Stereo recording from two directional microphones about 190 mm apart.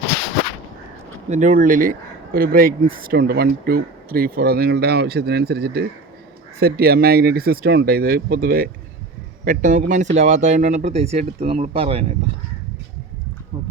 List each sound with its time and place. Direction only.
1.3 s speech: 40° right (ahead or behind)